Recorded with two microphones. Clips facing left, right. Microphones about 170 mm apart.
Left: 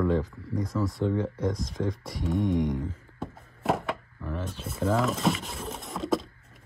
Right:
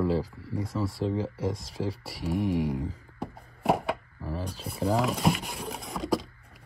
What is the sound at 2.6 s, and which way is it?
Speech, 35° right (ahead or behind).